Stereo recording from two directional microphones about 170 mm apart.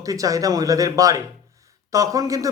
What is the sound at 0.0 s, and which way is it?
Speech, 20° right (ahead or behind).